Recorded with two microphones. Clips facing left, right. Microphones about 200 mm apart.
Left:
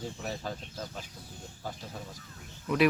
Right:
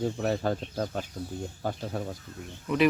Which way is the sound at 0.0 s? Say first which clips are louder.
Right 10 dB; 60° right (ahead or behind).